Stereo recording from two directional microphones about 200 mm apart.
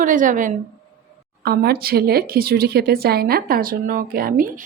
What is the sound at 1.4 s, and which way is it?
Speech, 50° right (ahead or behind).